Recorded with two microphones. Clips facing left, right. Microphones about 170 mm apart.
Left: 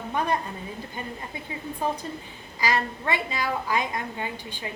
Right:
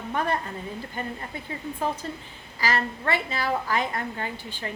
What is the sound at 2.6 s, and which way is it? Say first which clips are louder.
A woman's voice: left 1 dB; 15° left (ahead or behind).